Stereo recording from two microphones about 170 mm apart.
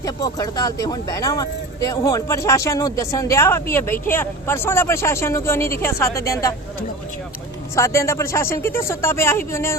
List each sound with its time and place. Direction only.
0.0 s speech: 20° left (ahead or behind)
7.8 s speech: 15° left (ahead or behind)